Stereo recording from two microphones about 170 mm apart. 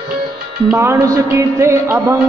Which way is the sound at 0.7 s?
15° right (ahead or behind).